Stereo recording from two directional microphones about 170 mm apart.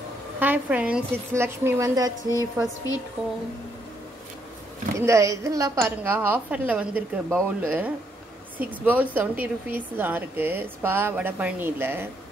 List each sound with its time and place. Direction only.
0.4 s a woman's voice: 10° right (ahead or behind)
2.2 s a woman's voice: 20° left (ahead or behind)
4.9 s a woman's voice: 15° right (ahead or behind)